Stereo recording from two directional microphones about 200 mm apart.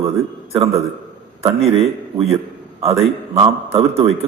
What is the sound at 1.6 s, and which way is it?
Speech, 30° right (ahead or behind).